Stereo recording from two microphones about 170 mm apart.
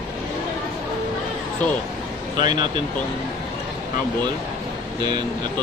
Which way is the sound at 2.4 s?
25° right (ahead or behind).